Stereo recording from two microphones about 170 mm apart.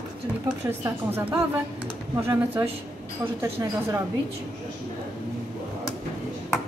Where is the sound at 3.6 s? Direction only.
20° right (ahead or behind).